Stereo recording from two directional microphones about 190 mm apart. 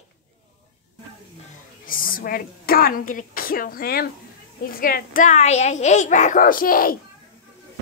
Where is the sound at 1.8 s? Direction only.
45° left (ahead or behind).